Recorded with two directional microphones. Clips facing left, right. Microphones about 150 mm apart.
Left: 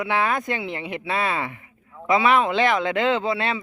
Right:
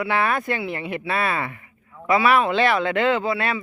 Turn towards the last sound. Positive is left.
turn(degrees=25)  # may be behind; listen again after turning